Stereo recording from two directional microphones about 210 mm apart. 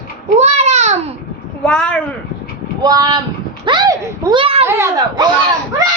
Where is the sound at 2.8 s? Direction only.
20° right (ahead or behind).